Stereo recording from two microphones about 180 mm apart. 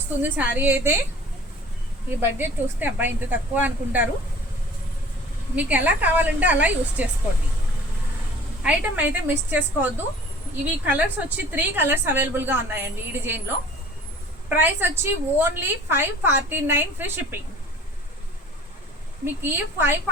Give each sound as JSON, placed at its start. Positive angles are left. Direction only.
{"t": 0.3, "sound": "a woman's voice", "side_deg": -10}
{"t": 2.0, "sound": "a woman's voice", "side_deg": -10}
{"t": 5.5, "sound": "a woman's voice", "side_deg": -10}
{"t": 8.6, "sound": "a woman's voice", "side_deg": -10}
{"t": 14.5, "sound": "a woman's voice", "side_deg": -10}
{"t": 19.2, "sound": "a woman's voice", "side_deg": -10}